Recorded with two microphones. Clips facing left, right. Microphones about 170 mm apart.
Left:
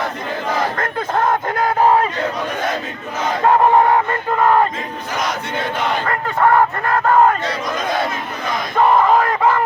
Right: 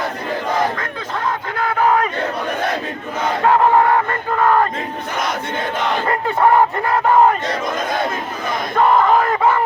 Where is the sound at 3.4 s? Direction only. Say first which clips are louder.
Left 1 dB; 15° left (ahead or behind).